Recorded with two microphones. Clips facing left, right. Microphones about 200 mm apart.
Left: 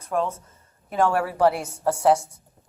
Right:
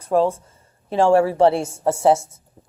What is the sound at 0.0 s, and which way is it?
A woman's voice, 30° right (ahead or behind).